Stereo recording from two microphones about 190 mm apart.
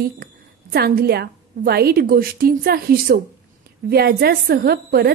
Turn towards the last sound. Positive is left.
turn(degrees=-55)  # may be behind; listen again after turning